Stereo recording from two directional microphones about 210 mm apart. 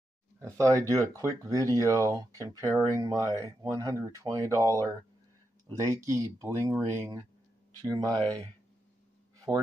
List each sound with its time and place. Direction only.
0.4 s speech: 15° right (ahead or behind)
0.8 s speech: 10° left (ahead or behind)
1.1 s speech: 15° right (ahead or behind)
5.9 s speech: 15° right (ahead or behind)